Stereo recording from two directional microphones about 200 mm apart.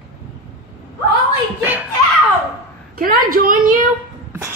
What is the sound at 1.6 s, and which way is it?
Speech, 10° right (ahead or behind).